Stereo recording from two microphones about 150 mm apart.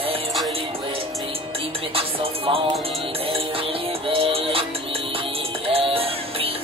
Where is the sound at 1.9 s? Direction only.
35° right (ahead or behind).